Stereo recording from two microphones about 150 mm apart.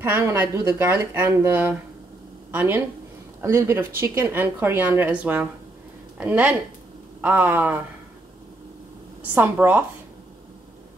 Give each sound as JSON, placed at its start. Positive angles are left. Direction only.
{"t": 0.0, "sound": "speech", "side_deg": -15}
{"t": 9.3, "sound": "speech", "side_deg": -15}